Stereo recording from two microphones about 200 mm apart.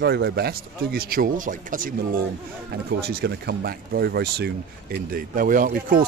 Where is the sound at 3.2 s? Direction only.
55° right (ahead or behind).